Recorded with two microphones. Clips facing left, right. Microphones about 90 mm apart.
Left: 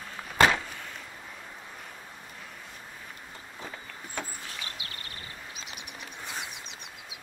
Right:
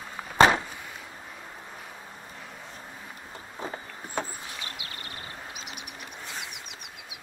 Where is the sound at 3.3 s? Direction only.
30° right (ahead or behind).